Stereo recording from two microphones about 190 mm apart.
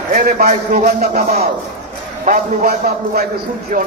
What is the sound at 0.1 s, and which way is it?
A man's voice, 40° right (ahead or behind).